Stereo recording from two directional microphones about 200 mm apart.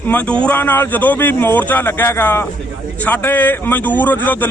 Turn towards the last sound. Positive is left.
turn(degrees=10)  # may be behind; listen again after turning